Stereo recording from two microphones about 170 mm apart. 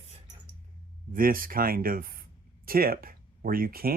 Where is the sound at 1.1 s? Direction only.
55° right (ahead or behind).